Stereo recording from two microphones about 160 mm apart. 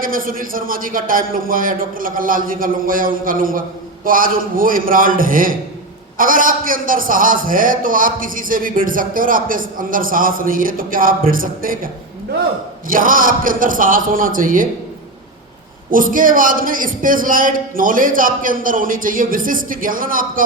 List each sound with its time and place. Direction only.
0.0 s a man's voice: 60° right (ahead or behind)
12.9 s a man's voice: 60° right (ahead or behind)
15.9 s a man's voice: 60° right (ahead or behind)